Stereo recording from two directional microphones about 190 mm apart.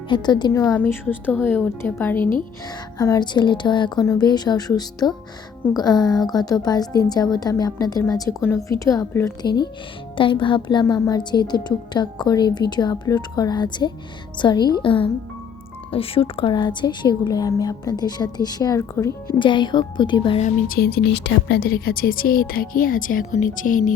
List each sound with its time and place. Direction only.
0.1 s a woman's voice: 25° left (ahead or behind)
0.6 s a woman's voice: 10° left (ahead or behind)
20.4 s speech: 45° left (ahead or behind)